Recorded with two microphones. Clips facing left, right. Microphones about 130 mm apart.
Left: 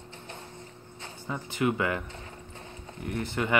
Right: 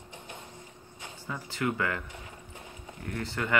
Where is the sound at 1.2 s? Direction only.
20° left (ahead or behind).